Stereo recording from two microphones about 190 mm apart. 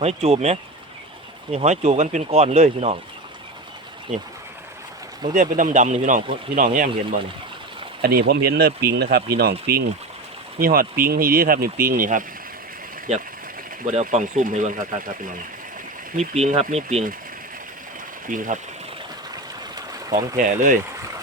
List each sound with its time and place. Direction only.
0.0 s speech: 35° right (ahead or behind)
4.1 s speech: 40° right (ahead or behind)
5.3 s speech: 40° right (ahead or behind)
8.0 s speech: 55° right (ahead or behind)
13.8 s speech: 40° right (ahead or behind)
16.1 s speech: 35° right (ahead or behind)
18.3 s speech: 45° right (ahead or behind)
19.7 s a sound: 20° right (ahead or behind)
20.3 s speech: 40° right (ahead or behind)